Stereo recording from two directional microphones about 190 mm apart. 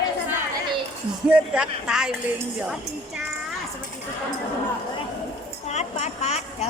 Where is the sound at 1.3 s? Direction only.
5° right (ahead or behind).